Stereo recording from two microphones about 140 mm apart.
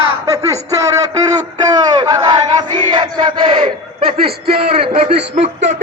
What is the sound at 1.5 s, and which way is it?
Battle cry, 25° right (ahead or behind).